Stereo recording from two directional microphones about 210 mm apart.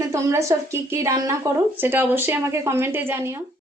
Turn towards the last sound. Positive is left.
turn(degrees=-10)  # may be behind; listen again after turning